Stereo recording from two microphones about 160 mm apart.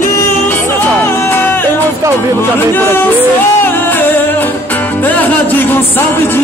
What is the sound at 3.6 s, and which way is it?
Music, 15° left (ahead or behind).